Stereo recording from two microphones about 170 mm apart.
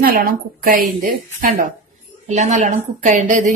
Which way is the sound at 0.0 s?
55° right (ahead or behind).